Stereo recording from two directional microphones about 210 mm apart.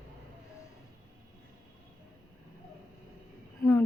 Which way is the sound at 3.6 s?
10° left (ahead or behind).